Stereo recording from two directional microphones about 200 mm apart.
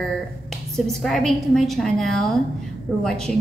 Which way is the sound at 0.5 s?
Centre (ahead or behind).